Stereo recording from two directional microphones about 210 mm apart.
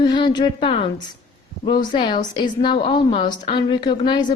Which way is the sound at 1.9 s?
20° left (ahead or behind).